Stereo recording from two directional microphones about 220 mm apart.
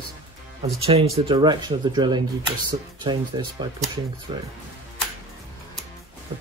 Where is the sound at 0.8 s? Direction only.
25° right (ahead or behind).